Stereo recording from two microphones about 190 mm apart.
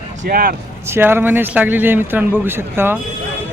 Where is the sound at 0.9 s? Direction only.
10° right (ahead or behind).